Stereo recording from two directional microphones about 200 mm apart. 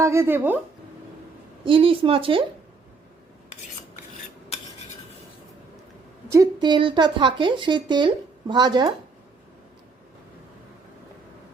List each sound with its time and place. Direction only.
0.0 s speech: 15° right (ahead or behind)
1.6 s speech: 25° right (ahead or behind)
4.5 s cutlery: 30° left (ahead or behind)
6.3 s speech: 20° right (ahead or behind)